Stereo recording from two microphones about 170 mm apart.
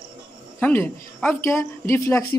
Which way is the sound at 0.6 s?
10° left (ahead or behind).